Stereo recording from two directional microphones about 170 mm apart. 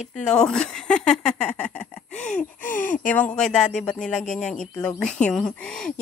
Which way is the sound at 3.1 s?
10° left (ahead or behind).